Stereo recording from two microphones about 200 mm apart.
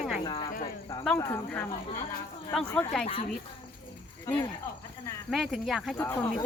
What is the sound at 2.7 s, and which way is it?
Speech, 10° left (ahead or behind).